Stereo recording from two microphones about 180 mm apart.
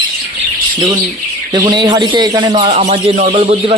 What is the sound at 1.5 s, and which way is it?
A man's voice, 25° right (ahead or behind).